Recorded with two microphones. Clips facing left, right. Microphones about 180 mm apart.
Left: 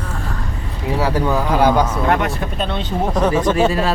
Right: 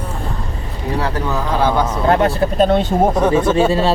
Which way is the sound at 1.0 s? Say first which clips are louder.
Left 4 dB; 10° left (ahead or behind).